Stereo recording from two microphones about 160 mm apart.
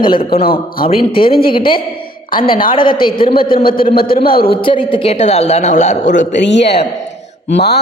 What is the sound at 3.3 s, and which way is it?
A man's voice, 65° left (ahead or behind).